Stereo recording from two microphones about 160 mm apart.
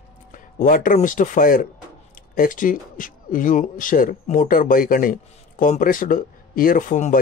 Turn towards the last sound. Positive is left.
turn(degrees=50)  # may be behind; listen again after turning